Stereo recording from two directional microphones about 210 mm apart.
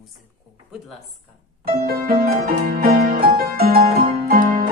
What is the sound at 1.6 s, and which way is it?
Music, 45° right (ahead or behind).